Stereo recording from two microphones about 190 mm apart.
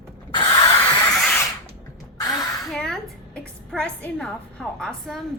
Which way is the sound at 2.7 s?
Centre (ahead or behind).